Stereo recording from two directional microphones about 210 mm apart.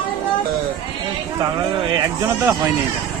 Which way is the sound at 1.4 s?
25° right (ahead or behind).